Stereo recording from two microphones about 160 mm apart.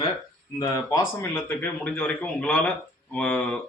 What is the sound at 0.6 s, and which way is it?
Speech, 25° left (ahead or behind).